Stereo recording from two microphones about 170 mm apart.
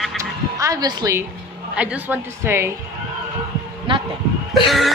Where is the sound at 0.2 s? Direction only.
20° right (ahead or behind).